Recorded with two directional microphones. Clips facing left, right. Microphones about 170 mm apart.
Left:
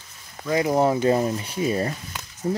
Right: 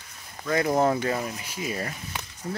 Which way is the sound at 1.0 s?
30° left (ahead or behind).